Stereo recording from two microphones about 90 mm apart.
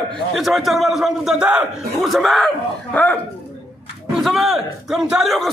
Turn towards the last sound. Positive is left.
turn(degrees=0)  # may be behind; listen again after turning